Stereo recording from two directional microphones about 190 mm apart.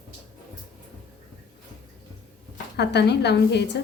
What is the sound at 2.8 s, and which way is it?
Speech, 60° left (ahead or behind).